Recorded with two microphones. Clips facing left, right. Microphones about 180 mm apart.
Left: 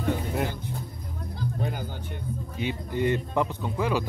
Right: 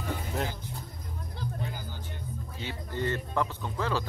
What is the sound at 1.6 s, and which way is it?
Music, 60° left (ahead or behind).